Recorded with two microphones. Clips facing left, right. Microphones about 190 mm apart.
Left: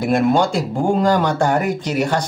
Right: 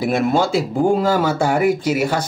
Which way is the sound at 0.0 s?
5° right (ahead or behind).